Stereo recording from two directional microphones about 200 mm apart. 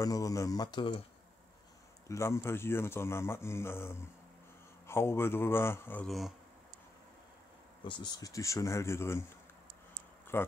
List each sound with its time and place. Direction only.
0.0 s a man's voice: 15° left (ahead or behind)
2.0 s a man's voice: 15° left (ahead or behind)
7.8 s a man's voice: 20° left (ahead or behind)
10.3 s a man's voice: 10° left (ahead or behind)